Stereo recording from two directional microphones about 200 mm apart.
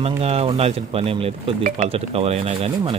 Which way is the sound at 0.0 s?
30° right (ahead or behind).